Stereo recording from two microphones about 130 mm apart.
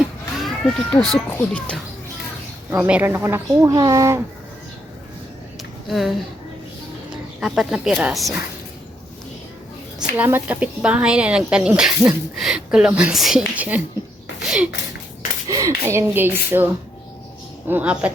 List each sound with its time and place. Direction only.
0.0 s cat: centre (ahead or behind)
1.4 s a child's voice: 10° left (ahead or behind)
2.6 s speech: 20° right (ahead or behind)
5.9 s a woman's voice: centre (ahead or behind)
7.3 s a woman's voice: centre (ahead or behind)
10.2 s speech: 15° right (ahead or behind)
14.4 s a sound: 5° right (ahead or behind)
15.4 s speech: 25° right (ahead or behind)